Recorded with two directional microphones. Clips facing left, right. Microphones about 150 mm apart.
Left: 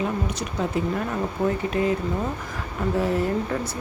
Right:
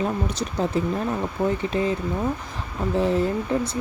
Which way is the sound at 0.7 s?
30° right (ahead or behind).